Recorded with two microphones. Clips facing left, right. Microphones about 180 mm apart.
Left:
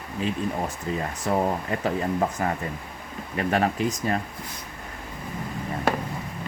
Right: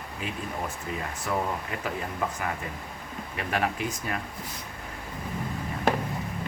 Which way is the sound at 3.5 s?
35° left (ahead or behind).